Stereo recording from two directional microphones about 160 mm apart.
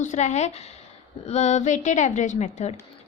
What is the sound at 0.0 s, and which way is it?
A woman's voice, 50° left (ahead or behind).